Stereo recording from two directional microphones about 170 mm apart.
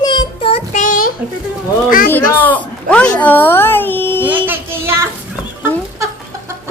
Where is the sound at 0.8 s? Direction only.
50° left (ahead or behind).